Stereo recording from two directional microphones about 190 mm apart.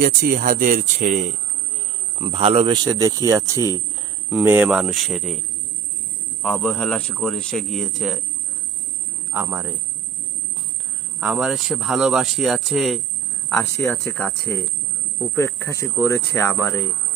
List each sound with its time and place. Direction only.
0.0 s speech: 50° right (ahead or behind)
2.1 s speech: 30° right (ahead or behind); by 5.4 s centre (ahead or behind)
6.4 s speech: 5° left (ahead or behind)
9.3 s speech: 5° right (ahead or behind)
11.2 s speech: 5° right (ahead or behind)
13.5 s speech: 10° left (ahead or behind)